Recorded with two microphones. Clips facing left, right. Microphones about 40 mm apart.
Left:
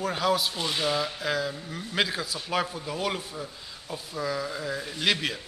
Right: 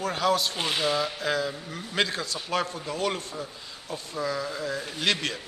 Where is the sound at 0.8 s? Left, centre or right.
Centre.